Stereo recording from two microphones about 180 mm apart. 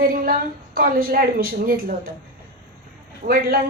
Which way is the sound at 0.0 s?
50° right (ahead or behind).